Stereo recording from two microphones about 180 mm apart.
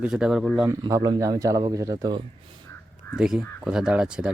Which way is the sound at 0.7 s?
20° right (ahead or behind).